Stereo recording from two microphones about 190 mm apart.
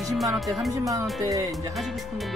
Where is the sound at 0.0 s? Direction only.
Centre (ahead or behind).